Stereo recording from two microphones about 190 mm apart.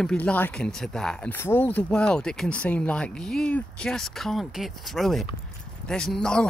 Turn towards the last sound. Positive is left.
turn(degrees=5)  # may be behind; listen again after turning